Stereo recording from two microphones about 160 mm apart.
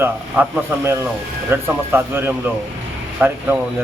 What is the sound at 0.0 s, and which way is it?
A man's voice, 15° right (ahead or behind).